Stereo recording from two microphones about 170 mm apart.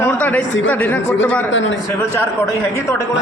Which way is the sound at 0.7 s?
10° left (ahead or behind).